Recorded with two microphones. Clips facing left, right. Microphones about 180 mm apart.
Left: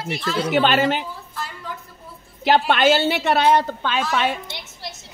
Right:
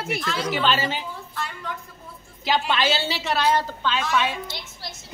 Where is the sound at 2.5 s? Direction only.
60° left (ahead or behind).